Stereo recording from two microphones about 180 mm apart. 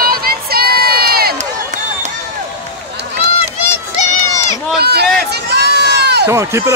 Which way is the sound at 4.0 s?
45° left (ahead or behind).